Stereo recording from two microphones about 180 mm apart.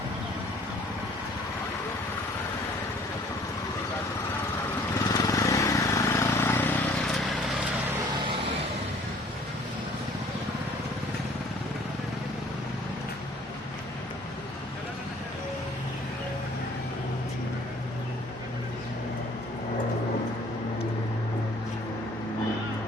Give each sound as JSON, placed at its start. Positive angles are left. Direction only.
{"t": 5.1, "sound": "vehicle", "side_deg": 20}